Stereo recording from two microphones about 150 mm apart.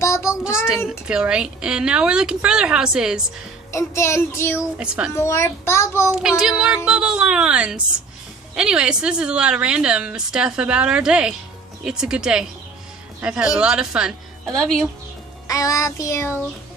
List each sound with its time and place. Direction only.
0.0 s child singing: 20° left (ahead or behind)
0.7 s a woman's voice: 5° right (ahead or behind)
3.7 s a child's voice: 20° left (ahead or behind)
4.6 s a woman's voice: 5° right (ahead or behind)
5.1 s a child's voice: 20° left (ahead or behind)
6.1 s a woman's voice: 5° right (ahead or behind)
15.4 s child singing: 20° left (ahead or behind)